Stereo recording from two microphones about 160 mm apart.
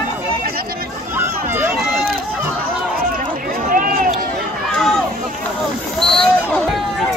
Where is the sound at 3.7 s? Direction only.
65° right (ahead or behind).